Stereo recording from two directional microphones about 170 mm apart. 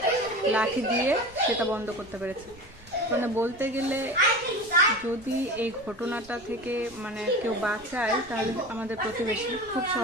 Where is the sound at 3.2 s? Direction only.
15° right (ahead or behind).